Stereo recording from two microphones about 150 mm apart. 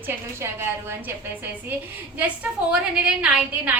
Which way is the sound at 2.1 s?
10° right (ahead or behind).